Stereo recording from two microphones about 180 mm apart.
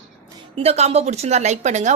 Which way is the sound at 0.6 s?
35° right (ahead or behind).